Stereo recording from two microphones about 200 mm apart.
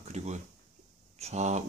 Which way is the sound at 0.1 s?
35° right (ahead or behind).